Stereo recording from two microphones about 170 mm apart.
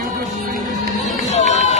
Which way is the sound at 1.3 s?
45° left (ahead or behind).